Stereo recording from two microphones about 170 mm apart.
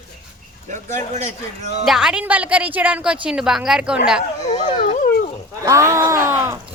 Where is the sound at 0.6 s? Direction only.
45° right (ahead or behind).